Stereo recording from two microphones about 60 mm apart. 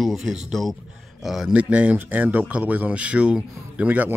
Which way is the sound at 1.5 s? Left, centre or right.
Right.